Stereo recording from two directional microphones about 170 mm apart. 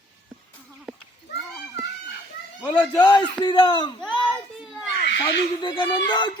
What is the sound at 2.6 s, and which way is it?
Speech, 10° left (ahead or behind).